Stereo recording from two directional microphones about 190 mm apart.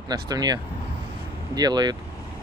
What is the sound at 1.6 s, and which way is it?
Speech, 20° right (ahead or behind).